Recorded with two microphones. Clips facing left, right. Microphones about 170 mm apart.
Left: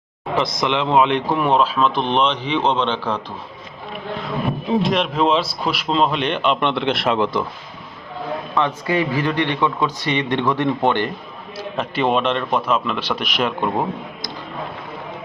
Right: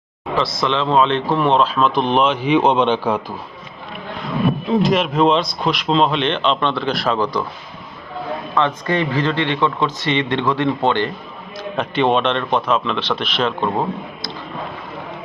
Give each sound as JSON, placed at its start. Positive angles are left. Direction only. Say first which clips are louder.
{"t": 0.3, "sound": "speech", "louder": "right 1 dB", "side_deg": 20}
{"t": 4.8, "sound": "speech", "louder": "right 4 dB", "side_deg": 0}
{"t": 8.5, "sound": "speech", "louder": "right 1 dB", "side_deg": 10}
{"t": 11.5, "sound": "speech", "louder": "right 3 dB", "side_deg": 5}